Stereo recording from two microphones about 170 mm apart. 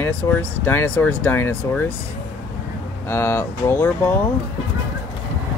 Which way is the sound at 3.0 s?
15° left (ahead or behind).